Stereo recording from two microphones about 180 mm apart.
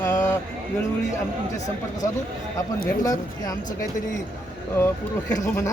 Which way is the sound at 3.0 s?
20° left (ahead or behind).